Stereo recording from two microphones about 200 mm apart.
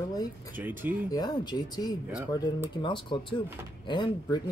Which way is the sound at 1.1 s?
20° left (ahead or behind).